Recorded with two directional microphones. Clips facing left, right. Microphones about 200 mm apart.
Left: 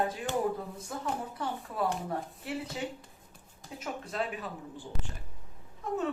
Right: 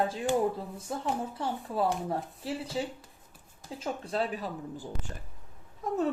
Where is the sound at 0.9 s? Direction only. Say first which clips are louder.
Right 3 dB; 30° right (ahead or behind).